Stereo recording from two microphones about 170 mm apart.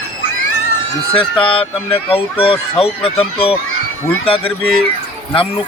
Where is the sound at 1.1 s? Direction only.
30° left (ahead or behind).